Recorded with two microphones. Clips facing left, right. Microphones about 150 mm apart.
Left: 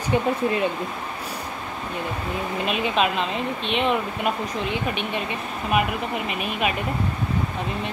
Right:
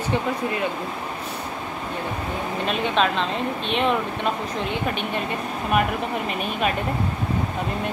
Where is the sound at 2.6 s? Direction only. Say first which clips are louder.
Right 1 dB; 5° left (ahead or behind).